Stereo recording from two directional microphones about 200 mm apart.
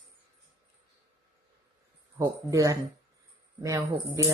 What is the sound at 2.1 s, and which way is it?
Speech, 15° right (ahead or behind).